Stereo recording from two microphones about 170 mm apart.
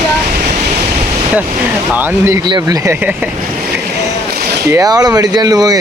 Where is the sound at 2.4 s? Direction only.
25° right (ahead or behind).